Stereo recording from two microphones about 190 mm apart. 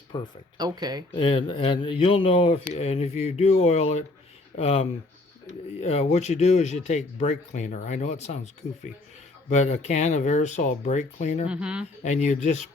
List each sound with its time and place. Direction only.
0.1 s speech: 25° left (ahead or behind)
0.5 s speech: 20° right (ahead or behind)
1.1 s speech: 30° left (ahead or behind)
9.5 s speech: 35° left (ahead or behind)
11.4 s speech: 5° right (ahead or behind)
12.0 s speech: 40° left (ahead or behind)